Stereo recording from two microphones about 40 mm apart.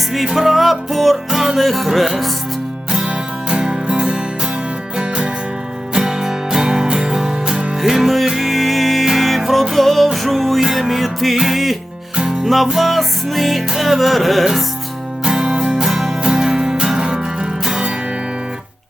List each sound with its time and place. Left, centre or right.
0.3 s music: centre
3.5 s music: centre
5.9 s music: centre
7.8 s music: centre
12.1 s music: centre
12.7 s music: centre
15.2 s music: centre